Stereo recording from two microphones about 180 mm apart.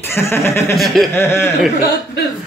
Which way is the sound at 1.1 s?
15° left (ahead or behind).